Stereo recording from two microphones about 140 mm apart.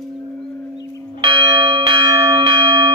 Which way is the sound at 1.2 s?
35° right (ahead or behind).